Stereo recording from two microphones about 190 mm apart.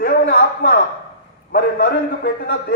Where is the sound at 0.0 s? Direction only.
60° left (ahead or behind).